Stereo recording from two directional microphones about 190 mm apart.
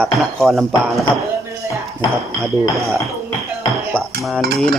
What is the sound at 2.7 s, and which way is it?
Speech, 15° right (ahead or behind).